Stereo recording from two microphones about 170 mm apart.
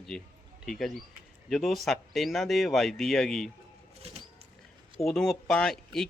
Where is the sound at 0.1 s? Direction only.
5° left (ahead or behind).